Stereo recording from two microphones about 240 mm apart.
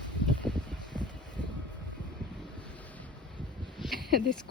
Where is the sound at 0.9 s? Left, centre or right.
Centre.